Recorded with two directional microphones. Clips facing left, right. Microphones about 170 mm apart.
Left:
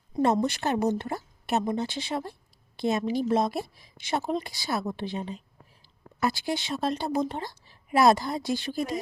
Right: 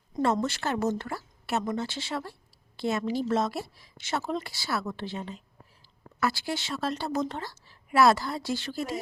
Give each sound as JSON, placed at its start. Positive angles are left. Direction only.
{"t": 0.1, "sound": "a woman's voice", "side_deg": 15}